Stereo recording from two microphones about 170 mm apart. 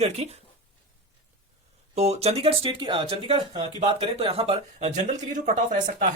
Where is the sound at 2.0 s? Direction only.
40° right (ahead or behind).